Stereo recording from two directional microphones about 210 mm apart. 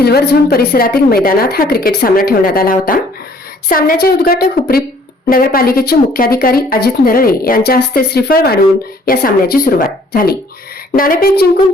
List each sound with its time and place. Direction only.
0.0 s speech: 50° left (ahead or behind)